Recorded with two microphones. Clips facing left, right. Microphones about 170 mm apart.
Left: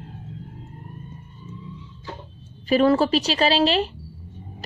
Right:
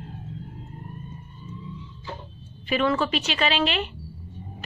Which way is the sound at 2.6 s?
35° left (ahead or behind).